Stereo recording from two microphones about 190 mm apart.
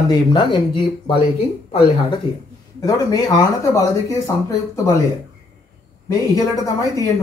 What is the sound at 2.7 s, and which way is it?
Speech, 20° left (ahead or behind).